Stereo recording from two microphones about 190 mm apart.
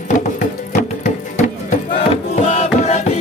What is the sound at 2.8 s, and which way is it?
Music, 35° left (ahead or behind).